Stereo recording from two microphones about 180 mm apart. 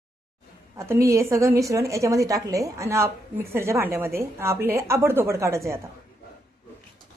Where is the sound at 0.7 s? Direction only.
15° right (ahead or behind).